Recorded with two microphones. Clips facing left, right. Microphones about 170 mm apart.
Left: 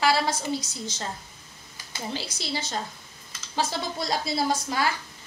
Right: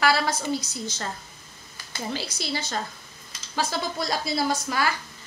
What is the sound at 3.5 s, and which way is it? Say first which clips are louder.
A woman's voice: right 1 dB; 25° left (ahead or behind).